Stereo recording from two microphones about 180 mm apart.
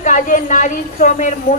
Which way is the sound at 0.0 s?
45° left (ahead or behind).